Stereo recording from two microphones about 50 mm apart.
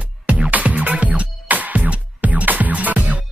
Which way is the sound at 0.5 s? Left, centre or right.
Right.